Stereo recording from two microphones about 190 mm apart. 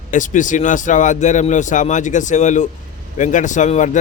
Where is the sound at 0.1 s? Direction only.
40° left (ahead or behind).